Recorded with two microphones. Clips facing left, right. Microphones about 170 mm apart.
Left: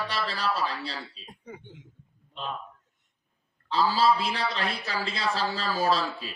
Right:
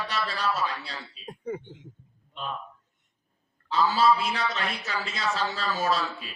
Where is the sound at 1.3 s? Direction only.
45° right (ahead or behind).